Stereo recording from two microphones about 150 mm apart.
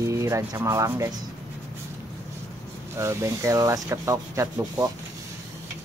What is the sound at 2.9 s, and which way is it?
Speech, 20° right (ahead or behind).